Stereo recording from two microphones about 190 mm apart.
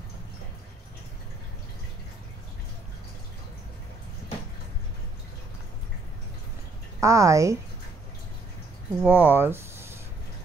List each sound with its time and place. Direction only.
7.0 s a woman's voice: 15° right (ahead or behind)
9.0 s speech: 10° right (ahead or behind)